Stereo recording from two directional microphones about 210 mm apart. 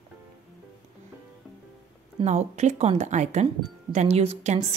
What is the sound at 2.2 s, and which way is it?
A woman's voice, 35° right (ahead or behind).